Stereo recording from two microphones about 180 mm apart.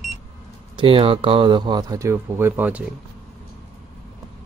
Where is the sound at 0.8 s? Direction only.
30° right (ahead or behind); by 2.8 s 10° right (ahead or behind).